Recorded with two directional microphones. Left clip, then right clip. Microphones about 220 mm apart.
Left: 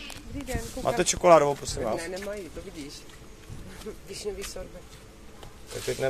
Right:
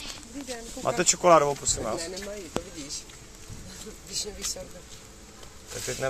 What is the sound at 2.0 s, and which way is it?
Speech, 25° left (ahead or behind).